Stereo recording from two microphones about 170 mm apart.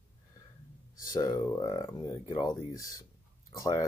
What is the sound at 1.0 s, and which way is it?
Speech, 20° left (ahead or behind).